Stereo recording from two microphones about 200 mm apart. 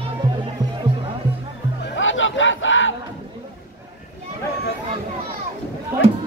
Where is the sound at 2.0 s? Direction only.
75° left (ahead or behind).